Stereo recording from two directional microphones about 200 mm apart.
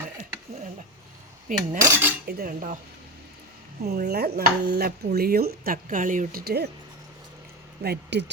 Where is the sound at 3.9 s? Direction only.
50° right (ahead or behind).